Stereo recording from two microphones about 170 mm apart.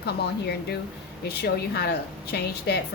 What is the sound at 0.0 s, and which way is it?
A woman's voice, 75° left (ahead or behind).